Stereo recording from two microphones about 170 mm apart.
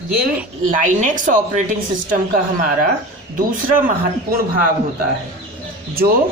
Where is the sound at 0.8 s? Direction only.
50° right (ahead or behind).